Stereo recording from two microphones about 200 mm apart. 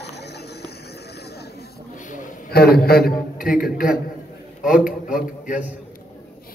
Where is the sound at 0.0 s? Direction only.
55° left (ahead or behind).